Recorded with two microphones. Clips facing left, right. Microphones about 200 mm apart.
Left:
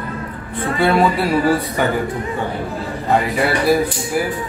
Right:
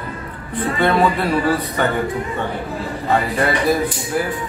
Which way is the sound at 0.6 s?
Centre (ahead or behind).